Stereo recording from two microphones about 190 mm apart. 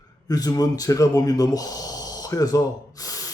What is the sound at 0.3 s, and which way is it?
A man's voice, 20° left (ahead or behind).